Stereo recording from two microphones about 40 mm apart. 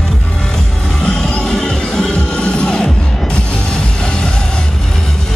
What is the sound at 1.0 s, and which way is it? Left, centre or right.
Music, centre.